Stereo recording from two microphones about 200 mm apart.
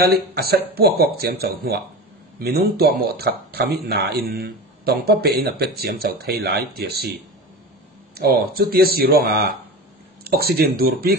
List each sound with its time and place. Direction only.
0.0 s speech: 50° right (ahead or behind)
8.1 s speech: 50° right (ahead or behind)